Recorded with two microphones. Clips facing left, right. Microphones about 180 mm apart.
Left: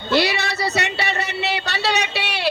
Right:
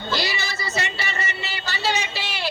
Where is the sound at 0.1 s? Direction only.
65° left (ahead or behind).